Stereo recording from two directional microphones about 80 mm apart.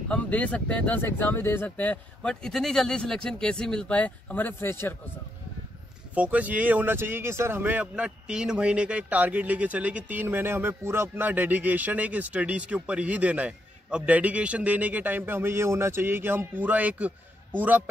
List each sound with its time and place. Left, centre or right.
0.1 s speech: centre
6.1 s a man's voice: centre
7.8 s a man's voice: centre